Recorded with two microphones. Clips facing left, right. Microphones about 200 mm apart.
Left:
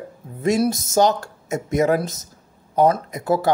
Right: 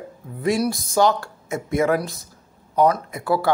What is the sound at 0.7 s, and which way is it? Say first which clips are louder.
Speech: left 2 dB; 45° left (ahead or behind).